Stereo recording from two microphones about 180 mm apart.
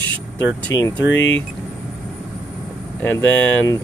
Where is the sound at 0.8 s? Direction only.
15° left (ahead or behind).